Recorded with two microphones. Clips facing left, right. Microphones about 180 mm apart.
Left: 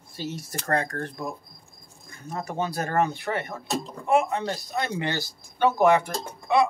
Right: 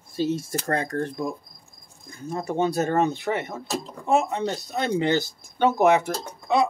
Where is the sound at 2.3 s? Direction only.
25° right (ahead or behind).